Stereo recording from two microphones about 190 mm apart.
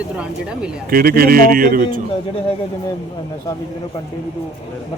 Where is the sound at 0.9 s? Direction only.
50° right (ahead or behind).